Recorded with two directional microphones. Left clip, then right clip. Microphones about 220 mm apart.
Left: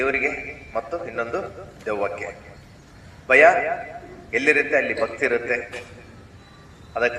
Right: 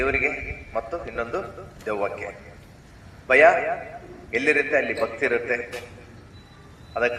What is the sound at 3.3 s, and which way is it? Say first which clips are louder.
A man's voice: left 2 dB; 15° left (ahead or behind).